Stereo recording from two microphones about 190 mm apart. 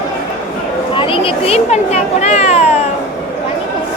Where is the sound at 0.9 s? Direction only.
30° left (ahead or behind).